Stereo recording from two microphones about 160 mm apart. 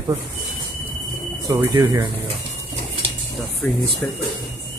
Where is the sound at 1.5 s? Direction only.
20° right (ahead or behind).